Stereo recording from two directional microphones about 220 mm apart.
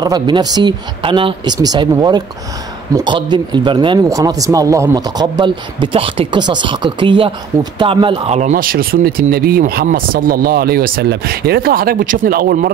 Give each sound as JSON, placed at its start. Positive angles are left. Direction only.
{"t": 0.0, "sound": "speech", "side_deg": -20}